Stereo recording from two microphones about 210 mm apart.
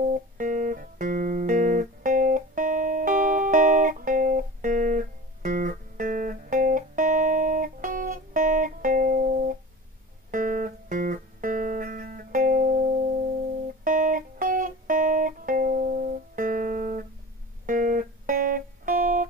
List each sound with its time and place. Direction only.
0.0 s music: 40° right (ahead or behind)